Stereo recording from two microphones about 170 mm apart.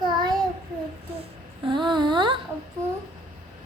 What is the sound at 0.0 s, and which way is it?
Child singing, 25° right (ahead or behind).